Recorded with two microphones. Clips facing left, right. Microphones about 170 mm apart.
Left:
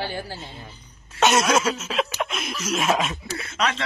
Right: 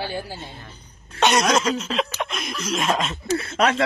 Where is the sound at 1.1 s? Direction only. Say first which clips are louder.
Even; centre (ahead or behind).